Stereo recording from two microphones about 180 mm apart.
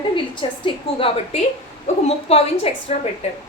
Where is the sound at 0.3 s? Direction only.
30° left (ahead or behind).